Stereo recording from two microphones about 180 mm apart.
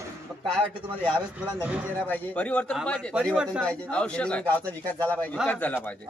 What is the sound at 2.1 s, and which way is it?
Speech, 10° left (ahead or behind).